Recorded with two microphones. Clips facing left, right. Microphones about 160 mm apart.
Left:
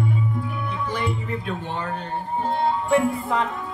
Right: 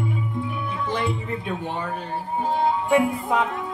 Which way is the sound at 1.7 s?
5° right (ahead or behind).